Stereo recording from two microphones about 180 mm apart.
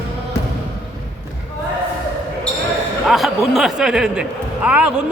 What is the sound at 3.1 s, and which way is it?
Speech, centre (ahead or behind).